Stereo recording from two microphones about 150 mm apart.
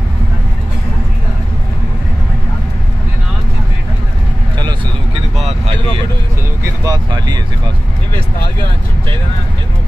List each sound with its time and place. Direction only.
6.8 s vehicle: 25° right (ahead or behind)